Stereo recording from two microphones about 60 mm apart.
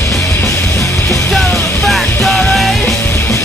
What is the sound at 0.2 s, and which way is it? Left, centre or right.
Music, left.